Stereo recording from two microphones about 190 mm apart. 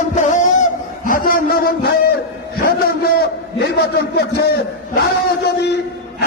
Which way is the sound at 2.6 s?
55° left (ahead or behind).